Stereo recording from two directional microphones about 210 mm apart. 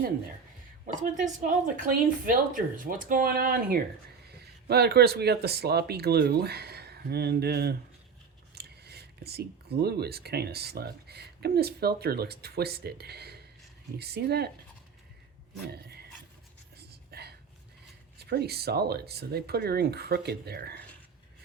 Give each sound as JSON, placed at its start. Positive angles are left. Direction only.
{"t": 1.0, "sound": "speech", "side_deg": -40}
{"t": 15.6, "sound": "a sound", "side_deg": -50}
{"t": 18.2, "sound": "speech", "side_deg": -50}